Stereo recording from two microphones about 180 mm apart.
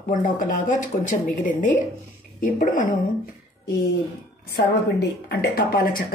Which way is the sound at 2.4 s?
45° left (ahead or behind).